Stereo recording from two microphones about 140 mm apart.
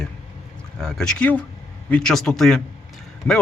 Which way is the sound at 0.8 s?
5° left (ahead or behind).